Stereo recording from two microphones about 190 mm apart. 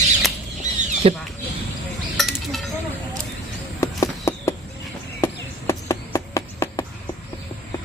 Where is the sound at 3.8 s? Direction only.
15° left (ahead or behind).